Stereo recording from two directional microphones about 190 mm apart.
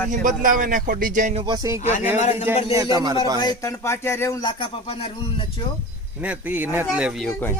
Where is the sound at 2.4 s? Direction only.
15° right (ahead or behind).